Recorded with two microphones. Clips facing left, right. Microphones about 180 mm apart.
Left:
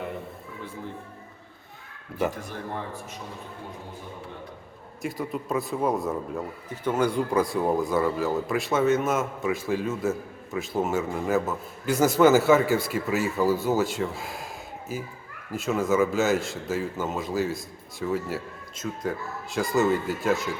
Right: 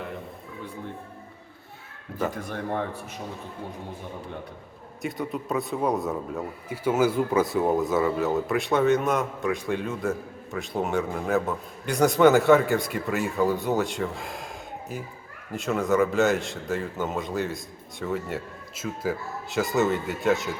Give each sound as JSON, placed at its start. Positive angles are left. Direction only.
{"t": 2.5, "sound": "a man's voice", "side_deg": -60}
{"t": 5.0, "sound": "speech", "side_deg": 0}